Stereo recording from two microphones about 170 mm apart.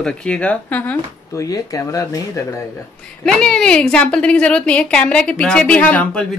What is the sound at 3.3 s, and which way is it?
A woman's voice, 5° left (ahead or behind).